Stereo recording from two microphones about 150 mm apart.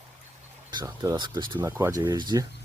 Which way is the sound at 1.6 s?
15° right (ahead or behind).